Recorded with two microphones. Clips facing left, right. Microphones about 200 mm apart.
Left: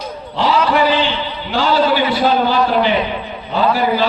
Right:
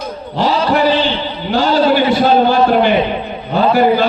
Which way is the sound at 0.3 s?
40° right (ahead or behind).